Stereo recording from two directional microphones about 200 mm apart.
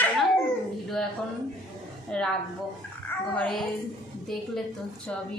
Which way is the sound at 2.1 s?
5° left (ahead or behind).